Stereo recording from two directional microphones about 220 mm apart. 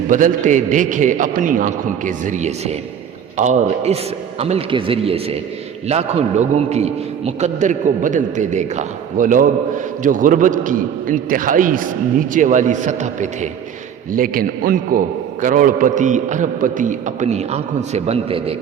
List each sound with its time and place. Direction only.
0.1 s a man's voice: 35° right (ahead or behind)